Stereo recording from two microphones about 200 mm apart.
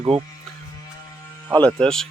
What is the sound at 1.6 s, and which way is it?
Speech, 5° left (ahead or behind).